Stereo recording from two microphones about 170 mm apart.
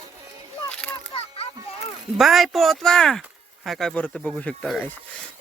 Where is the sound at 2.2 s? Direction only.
Centre (ahead or behind).